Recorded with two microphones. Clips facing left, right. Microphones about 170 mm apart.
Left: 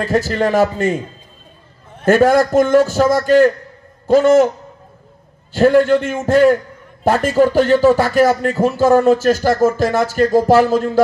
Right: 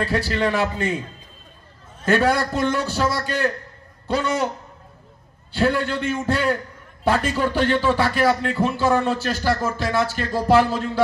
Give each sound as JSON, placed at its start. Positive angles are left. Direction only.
{"t": 0.0, "sound": "speech", "side_deg": 45}
{"t": 2.0, "sound": "speech", "side_deg": 45}
{"t": 5.5, "sound": "speech", "side_deg": 45}